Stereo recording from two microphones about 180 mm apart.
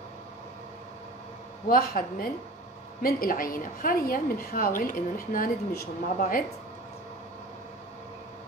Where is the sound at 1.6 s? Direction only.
55° left (ahead or behind).